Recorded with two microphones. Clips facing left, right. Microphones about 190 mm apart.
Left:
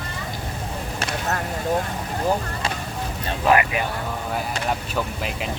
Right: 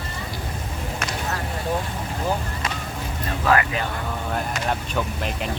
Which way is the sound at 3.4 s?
15° left (ahead or behind).